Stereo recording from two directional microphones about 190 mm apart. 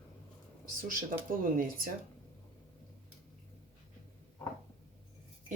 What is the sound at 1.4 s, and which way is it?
Speech, 50° right (ahead or behind).